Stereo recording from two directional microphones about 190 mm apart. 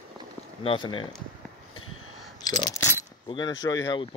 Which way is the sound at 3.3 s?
25° left (ahead or behind).